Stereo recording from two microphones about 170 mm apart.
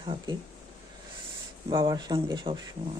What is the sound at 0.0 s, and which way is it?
Speech, 30° right (ahead or behind).